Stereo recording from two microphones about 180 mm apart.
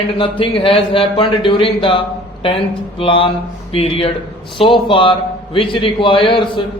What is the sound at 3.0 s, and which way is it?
A man's voice, 30° left (ahead or behind).